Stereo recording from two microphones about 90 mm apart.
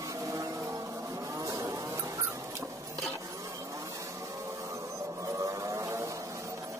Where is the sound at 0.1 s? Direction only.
40° right (ahead or behind).